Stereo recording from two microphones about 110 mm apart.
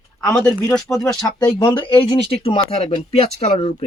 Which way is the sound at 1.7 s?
50° left (ahead or behind).